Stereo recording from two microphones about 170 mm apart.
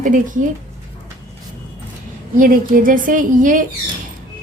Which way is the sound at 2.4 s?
55° right (ahead or behind).